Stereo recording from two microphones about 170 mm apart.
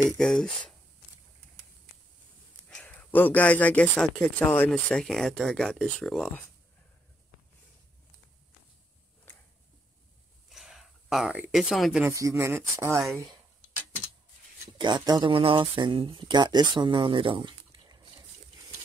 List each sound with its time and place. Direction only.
0.2 s speech: 5° left (ahead or behind)
2.7 s speech: 5° left (ahead or behind)
10.5 s a sound: centre (ahead or behind)
12.0 s speech: 20° right (ahead or behind)
13.0 s speech: centre (ahead or behind)
14.8 s speech: 25° right (ahead or behind)